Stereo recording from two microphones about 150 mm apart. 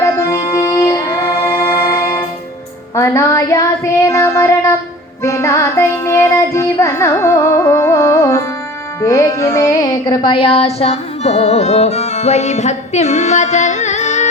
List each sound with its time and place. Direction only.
0.0 s music: 20° left (ahead or behind); by 14.3 s 50° left (ahead or behind)